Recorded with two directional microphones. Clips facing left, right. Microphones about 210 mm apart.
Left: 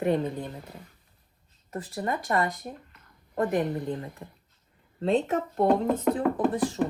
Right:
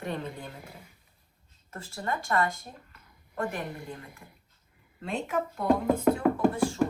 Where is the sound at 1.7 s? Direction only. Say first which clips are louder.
Left 4 dB; 20° left (ahead or behind).